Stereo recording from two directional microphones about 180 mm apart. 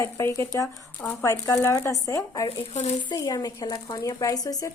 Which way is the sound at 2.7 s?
40° left (ahead or behind).